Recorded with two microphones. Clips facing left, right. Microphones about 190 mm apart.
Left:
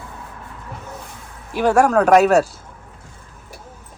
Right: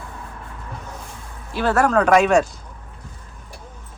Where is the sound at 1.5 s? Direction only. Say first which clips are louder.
Left 3 dB; 10° left (ahead or behind).